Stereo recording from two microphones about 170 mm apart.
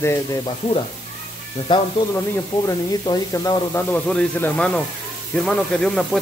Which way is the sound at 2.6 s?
25° left (ahead or behind).